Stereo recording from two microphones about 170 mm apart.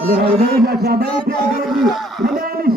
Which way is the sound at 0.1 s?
65° right (ahead or behind).